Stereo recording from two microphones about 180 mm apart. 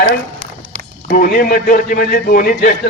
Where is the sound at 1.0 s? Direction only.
50° left (ahead or behind).